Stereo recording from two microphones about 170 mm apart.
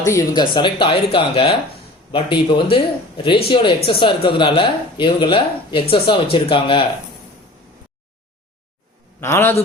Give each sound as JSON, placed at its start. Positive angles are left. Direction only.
{"t": 0.0, "sound": "a man's voice", "side_deg": 20}
{"t": 9.2, "sound": "a man's voice", "side_deg": 15}